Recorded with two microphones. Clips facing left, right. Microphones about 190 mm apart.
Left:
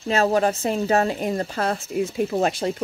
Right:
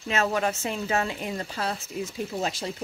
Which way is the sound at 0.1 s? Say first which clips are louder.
Left 6 dB; 35° left (ahead or behind).